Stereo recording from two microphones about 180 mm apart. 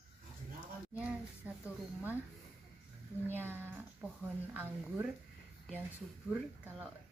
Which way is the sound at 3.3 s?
10° right (ahead or behind).